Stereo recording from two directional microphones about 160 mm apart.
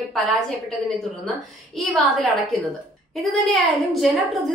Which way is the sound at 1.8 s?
Centre (ahead or behind).